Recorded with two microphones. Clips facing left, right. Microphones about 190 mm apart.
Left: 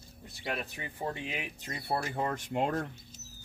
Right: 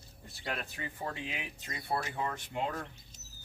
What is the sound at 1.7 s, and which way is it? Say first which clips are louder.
Speech: left 2 dB; 35° left (ahead or behind).